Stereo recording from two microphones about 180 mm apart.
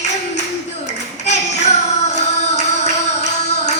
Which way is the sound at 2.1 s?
40° left (ahead or behind).